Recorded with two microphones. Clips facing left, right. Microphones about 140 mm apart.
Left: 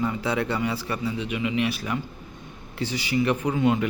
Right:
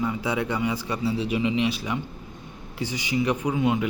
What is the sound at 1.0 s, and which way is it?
A man's voice, 35° right (ahead or behind).